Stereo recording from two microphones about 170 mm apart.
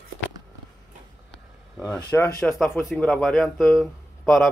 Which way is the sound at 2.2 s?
5° left (ahead or behind).